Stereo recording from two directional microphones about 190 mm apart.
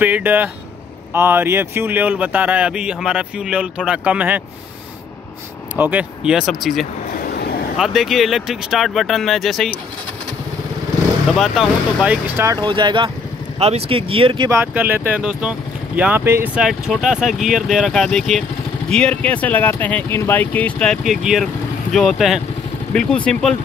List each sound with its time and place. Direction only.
0.0 s speech: 10° right (ahead or behind)
5.8 s speech: 10° right (ahead or behind)
7.2 s vehicle: 55° left (ahead or behind)
7.7 s speech: centre (ahead or behind)
11.3 s speech: centre (ahead or behind)
12.5 s speech: 25° right (ahead or behind)
14.5 s speech: 10° right (ahead or behind)